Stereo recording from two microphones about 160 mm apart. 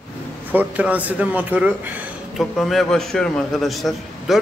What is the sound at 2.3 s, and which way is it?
A man's voice, centre (ahead or behind).